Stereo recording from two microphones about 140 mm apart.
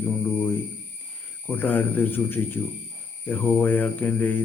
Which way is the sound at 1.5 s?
15° left (ahead or behind).